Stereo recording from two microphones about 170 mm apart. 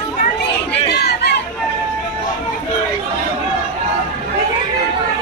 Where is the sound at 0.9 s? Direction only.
75° left (ahead or behind).